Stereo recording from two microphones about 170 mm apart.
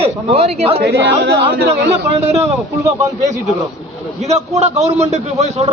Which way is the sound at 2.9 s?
15° right (ahead or behind).